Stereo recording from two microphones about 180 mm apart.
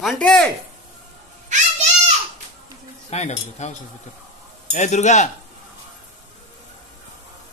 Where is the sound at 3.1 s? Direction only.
40° left (ahead or behind).